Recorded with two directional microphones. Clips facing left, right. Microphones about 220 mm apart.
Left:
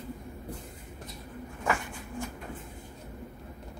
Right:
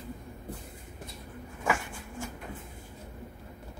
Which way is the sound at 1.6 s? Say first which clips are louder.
Even; 10° right (ahead or behind).